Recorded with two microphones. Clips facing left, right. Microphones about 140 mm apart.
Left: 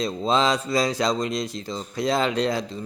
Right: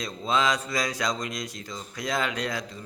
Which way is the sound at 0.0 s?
30° left (ahead or behind).